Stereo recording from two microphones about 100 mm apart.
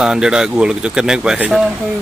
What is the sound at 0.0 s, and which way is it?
Speech, 5° right (ahead or behind).